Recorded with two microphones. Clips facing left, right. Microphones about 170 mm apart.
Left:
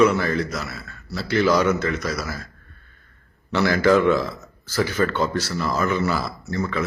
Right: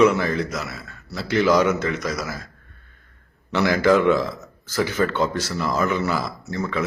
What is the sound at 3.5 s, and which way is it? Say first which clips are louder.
Speech: even; 15° right (ahead or behind).